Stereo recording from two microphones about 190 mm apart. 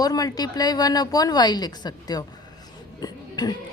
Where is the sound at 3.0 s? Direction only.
20° left (ahead or behind).